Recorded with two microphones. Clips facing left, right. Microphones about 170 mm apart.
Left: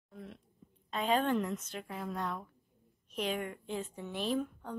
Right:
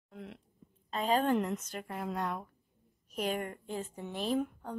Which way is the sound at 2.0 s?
15° right (ahead or behind).